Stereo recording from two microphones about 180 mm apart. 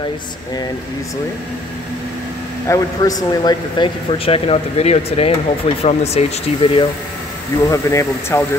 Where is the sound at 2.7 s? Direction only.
15° left (ahead or behind); by 6.8 s 35° left (ahead or behind).